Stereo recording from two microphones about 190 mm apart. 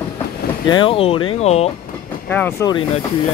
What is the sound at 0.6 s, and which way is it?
Speech, 25° left (ahead or behind).